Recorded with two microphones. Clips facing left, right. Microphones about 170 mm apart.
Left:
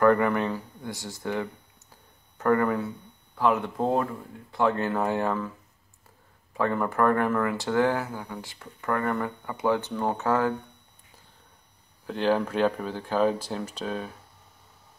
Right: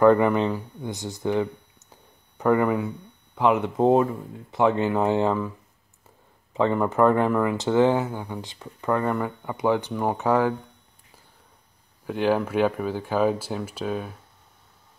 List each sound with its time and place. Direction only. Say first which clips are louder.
0.0 s speech: right 4 dB; 20° right (ahead or behind)
6.5 s speech: right 4 dB; 20° right (ahead or behind)
12.1 s speech: right 2 dB; 10° right (ahead or behind)